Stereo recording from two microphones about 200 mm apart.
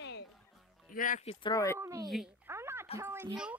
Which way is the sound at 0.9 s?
45° left (ahead or behind).